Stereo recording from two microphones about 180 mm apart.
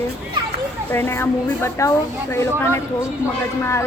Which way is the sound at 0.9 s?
15° left (ahead or behind).